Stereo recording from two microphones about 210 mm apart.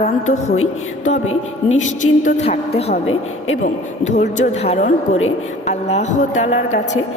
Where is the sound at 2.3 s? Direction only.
30° left (ahead or behind).